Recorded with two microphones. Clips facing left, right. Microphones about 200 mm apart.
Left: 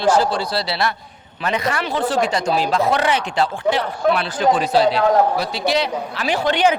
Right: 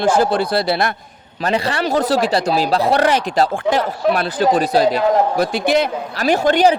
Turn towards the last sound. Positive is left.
turn(degrees=-40)  # may be behind; listen again after turning